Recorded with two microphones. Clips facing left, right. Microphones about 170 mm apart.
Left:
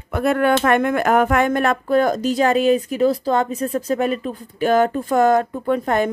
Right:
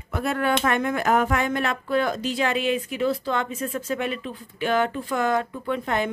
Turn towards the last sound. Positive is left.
turn(degrees=45)  # may be behind; listen again after turning